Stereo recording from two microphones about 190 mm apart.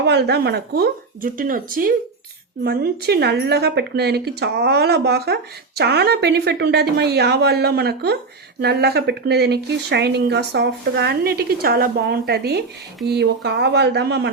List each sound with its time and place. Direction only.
0.0 s a woman's voice: 65° right (ahead or behind); by 1.9 s 45° right (ahead or behind)
2.6 s a woman's voice: 55° right (ahead or behind)